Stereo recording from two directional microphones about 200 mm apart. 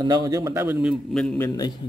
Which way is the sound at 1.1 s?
5° left (ahead or behind).